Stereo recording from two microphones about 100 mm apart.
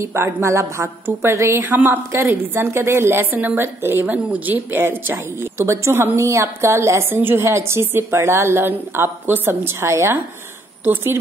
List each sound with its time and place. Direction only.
0.0 s a woman's voice: 25° right (ahead or behind)